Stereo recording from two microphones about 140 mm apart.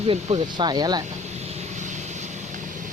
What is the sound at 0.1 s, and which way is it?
Speech, 40° right (ahead or behind).